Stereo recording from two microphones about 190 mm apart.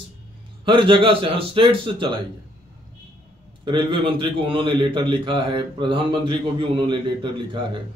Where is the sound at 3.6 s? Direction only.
25° right (ahead or behind).